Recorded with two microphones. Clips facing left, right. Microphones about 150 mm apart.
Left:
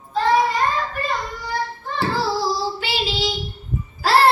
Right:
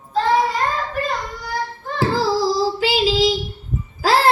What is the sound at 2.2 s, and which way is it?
Child singing, 90° right.